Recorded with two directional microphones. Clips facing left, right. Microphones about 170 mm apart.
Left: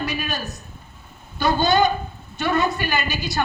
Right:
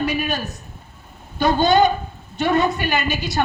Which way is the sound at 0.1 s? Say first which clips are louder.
Right 4 dB; 50° right (ahead or behind).